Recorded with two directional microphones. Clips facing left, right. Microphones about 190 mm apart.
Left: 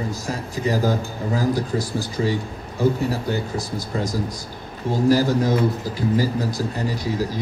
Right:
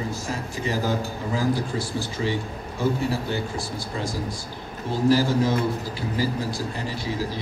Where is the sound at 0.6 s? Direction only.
40° left (ahead or behind).